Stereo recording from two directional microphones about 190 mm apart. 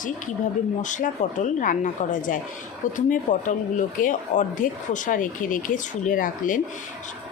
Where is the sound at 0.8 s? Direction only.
40° left (ahead or behind).